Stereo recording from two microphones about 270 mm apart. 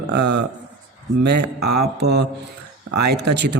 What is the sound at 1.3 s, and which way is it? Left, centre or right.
Speech, right.